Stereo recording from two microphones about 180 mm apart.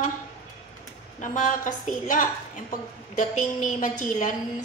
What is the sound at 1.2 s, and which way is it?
A woman's voice, 45° left (ahead or behind).